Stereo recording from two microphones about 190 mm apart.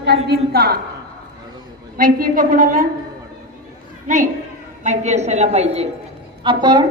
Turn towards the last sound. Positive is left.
turn(degrees=-25)  # may be behind; listen again after turning